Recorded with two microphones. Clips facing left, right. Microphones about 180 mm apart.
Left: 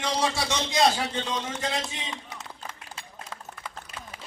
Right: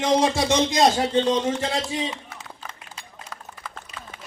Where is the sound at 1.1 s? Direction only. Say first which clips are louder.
Right 10 dB; 30° right (ahead or behind).